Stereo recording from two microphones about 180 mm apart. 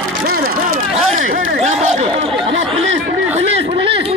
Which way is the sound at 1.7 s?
40° right (ahead or behind).